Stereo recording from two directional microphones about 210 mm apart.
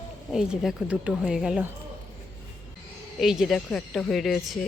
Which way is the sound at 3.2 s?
Centre (ahead or behind).